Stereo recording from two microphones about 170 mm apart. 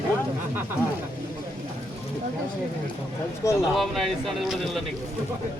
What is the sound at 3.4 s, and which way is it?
Speech, 15° left (ahead or behind).